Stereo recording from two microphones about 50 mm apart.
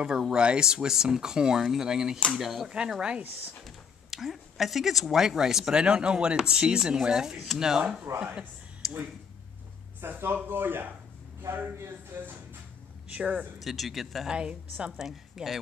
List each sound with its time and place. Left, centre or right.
0.3 s speech: centre
3.0 s a woman's voice: right
3.6 s a sound: centre
5.2 s speech: centre
8.1 s speech: right
8.8 s a sound: centre
9.9 s speech: right
13.1 s a woman's voice: right
13.6 s speech: centre
14.3 s a woman's voice: centre
15.0 s speech: centre